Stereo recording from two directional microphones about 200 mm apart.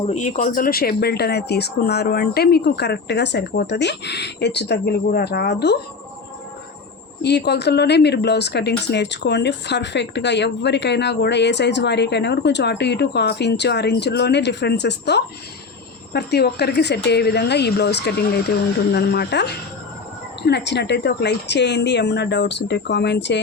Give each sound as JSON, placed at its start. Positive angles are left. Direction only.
{"t": 0.1, "sound": "speech", "side_deg": 35}
{"t": 7.2, "sound": "speech", "side_deg": 55}